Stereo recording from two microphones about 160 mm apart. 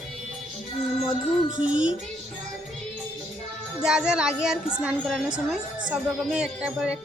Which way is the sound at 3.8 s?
5° right (ahead or behind).